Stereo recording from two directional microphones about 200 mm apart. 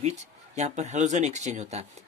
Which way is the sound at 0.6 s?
35° right (ahead or behind).